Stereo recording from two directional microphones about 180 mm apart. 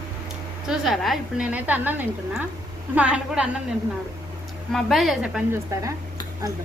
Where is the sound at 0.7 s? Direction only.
Centre (ahead or behind).